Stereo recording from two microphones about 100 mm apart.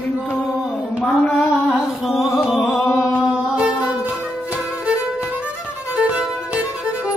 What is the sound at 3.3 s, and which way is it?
Music, 10° right (ahead or behind).